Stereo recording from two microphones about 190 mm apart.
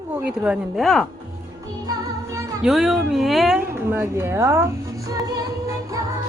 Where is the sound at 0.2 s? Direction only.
5° right (ahead or behind).